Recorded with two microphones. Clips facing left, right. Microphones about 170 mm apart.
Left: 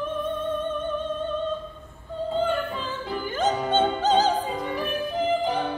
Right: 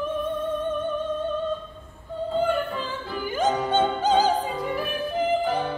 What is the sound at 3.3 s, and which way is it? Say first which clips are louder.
Opera: right 1 dB; 10° right (ahead or behind).